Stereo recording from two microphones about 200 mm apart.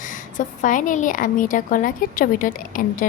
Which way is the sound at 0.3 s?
40° left (ahead or behind).